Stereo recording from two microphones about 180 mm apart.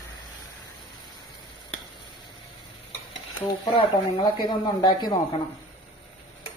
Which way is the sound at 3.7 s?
30° left (ahead or behind).